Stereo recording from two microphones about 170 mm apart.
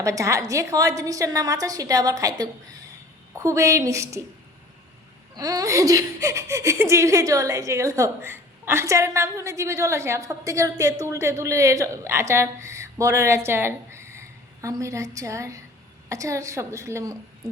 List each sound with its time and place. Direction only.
0.0 s a woman's voice: 20° right (ahead or behind)
5.4 s speech: 20° right (ahead or behind)